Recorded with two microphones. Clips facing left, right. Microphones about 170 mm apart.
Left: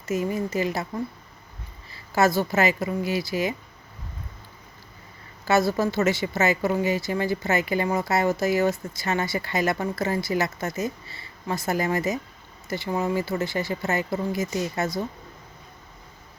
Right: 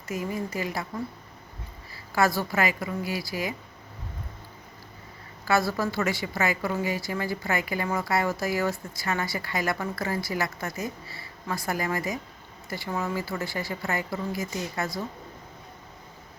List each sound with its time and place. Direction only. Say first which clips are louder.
0.0 s a woman's voice: left 5 dB; 25° left (ahead or behind)
1.9 s a woman's voice: left 3 dB; 20° left (ahead or behind)
5.5 s a woman's voice: left 4 dB; 20° left (ahead or behind)